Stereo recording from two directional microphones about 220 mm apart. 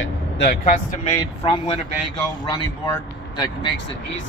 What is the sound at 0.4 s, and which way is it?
Speech, 45° left (ahead or behind).